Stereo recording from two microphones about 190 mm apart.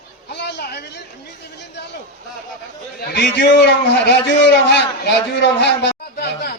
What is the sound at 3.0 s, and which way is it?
A man's voice, 60° left (ahead or behind).